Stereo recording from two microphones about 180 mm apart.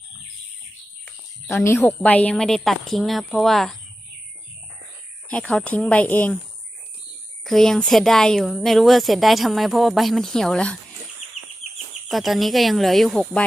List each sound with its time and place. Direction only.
1.0 s speech: 15° left (ahead or behind)
5.3 s speech: 5° left (ahead or behind)
7.4 s speech: centre (ahead or behind)
12.0 s speech: centre (ahead or behind)